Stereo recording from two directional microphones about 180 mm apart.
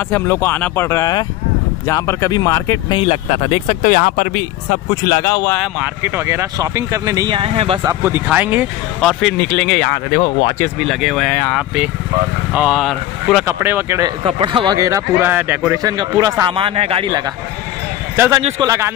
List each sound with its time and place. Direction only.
0.1 s speech: 15° left (ahead or behind)
3.0 s speech: 35° left (ahead or behind)
3.8 s speech: 50° left (ahead or behind)
5.0 s speech: 15° left (ahead or behind)
5.6 s speech: 10° right (ahead or behind); by 7.8 s 30° right (ahead or behind)
7.8 s speech: 15° right (ahead or behind); by 10.5 s 20° left (ahead or behind)
10.8 s speech: centre (ahead or behind)
11.5 s speech: 5° right (ahead or behind)
14.2 s speech: 25° right (ahead or behind)
16.5 s speech: 30° right (ahead or behind)
18.1 s a man's voice: 10° right (ahead or behind)